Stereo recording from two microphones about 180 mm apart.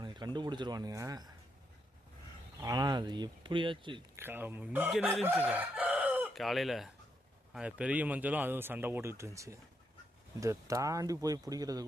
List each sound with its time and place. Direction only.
0.0 s a sound: 25° right (ahead or behind)
0.3 s speech: 25° right (ahead or behind)
2.6 s speech: 20° right (ahead or behind)
4.2 s chicken: 10° right (ahead or behind)
10.4 s speech: 20° right (ahead or behind)